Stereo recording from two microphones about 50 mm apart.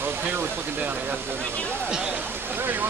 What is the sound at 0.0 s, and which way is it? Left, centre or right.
Speech, right.